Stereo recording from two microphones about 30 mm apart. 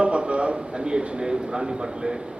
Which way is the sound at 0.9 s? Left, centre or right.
Right.